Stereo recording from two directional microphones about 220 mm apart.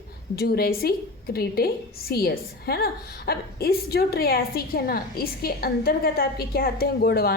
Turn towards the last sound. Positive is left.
turn(degrees=45)  # may be behind; listen again after turning